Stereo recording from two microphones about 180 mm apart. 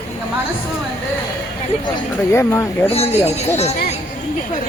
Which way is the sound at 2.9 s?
35° left (ahead or behind).